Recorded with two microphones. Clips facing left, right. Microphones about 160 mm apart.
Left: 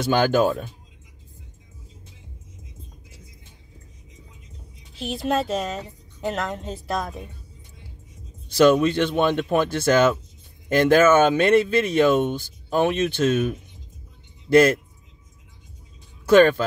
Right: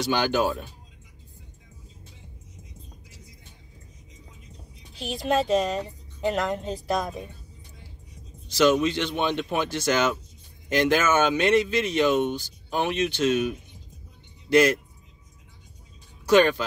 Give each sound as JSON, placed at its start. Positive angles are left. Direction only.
{"t": 0.0, "sound": "speech", "side_deg": 50}
{"t": 4.9, "sound": "a woman's voice", "side_deg": 0}
{"t": 8.5, "sound": "speech", "side_deg": 55}
{"t": 16.3, "sound": "speech", "side_deg": 50}